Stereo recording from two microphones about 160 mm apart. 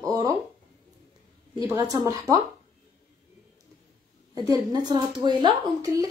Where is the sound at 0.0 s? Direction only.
25° right (ahead or behind).